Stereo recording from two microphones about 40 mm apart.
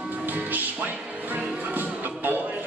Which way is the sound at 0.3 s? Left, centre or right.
Right.